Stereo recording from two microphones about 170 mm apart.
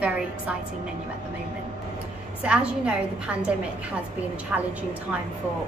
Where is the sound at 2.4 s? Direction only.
5° right (ahead or behind).